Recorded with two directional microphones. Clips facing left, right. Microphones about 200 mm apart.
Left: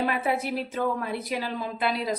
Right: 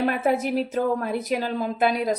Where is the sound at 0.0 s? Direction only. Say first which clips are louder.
Right 4 dB; 45° right (ahead or behind).